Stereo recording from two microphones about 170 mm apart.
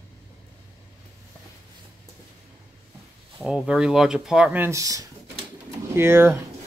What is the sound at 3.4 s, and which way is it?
Speech, 5° right (ahead or behind).